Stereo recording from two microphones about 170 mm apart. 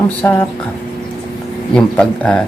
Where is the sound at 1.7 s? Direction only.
5° left (ahead or behind).